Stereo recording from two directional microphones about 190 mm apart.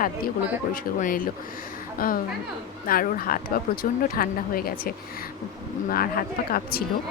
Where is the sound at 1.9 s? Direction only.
45° left (ahead or behind).